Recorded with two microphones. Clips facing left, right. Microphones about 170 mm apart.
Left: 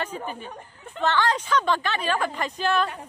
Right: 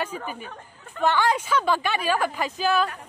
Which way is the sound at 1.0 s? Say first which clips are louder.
Right 1 dB; 10° right (ahead or behind).